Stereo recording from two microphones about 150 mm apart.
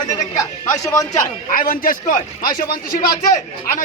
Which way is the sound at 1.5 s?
70° left (ahead or behind).